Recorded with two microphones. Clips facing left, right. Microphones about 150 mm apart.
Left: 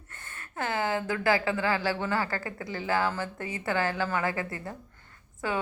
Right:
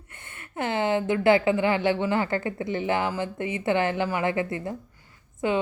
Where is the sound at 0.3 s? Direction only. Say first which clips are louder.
Right 4 dB; 20° right (ahead or behind).